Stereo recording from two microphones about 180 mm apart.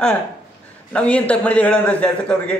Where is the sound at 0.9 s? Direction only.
5° left (ahead or behind).